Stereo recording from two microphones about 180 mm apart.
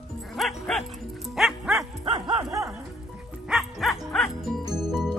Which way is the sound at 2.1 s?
25° right (ahead or behind).